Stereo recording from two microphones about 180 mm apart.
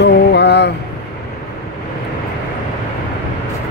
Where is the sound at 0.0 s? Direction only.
70° left (ahead or behind).